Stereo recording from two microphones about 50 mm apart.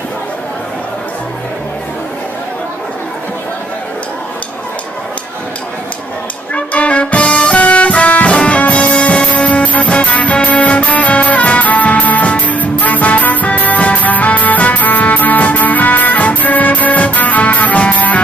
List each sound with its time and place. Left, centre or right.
6.5 s music: left